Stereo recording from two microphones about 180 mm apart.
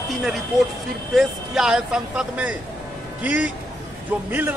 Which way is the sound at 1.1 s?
Centre (ahead or behind).